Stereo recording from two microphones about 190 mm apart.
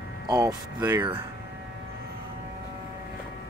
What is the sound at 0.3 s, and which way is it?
Speech, 20° right (ahead or behind).